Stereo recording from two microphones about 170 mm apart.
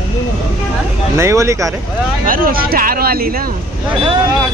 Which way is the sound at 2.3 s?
55° right (ahead or behind).